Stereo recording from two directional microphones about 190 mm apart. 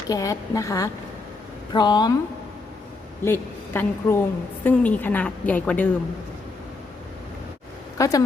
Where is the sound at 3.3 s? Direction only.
10° left (ahead or behind).